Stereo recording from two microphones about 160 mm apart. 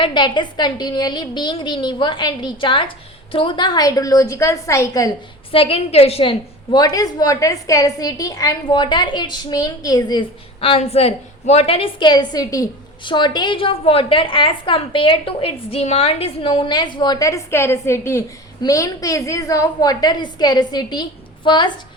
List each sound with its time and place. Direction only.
0.0 s a woman's voice: 30° left (ahead or behind)
5.5 s a woman's voice: 35° left (ahead or behind)
6.7 s a woman's voice: 25° left (ahead or behind)